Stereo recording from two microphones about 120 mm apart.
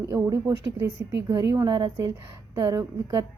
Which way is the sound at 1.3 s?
35° right (ahead or behind).